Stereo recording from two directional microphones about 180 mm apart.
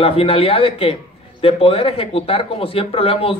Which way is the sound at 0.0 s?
30° left (ahead or behind).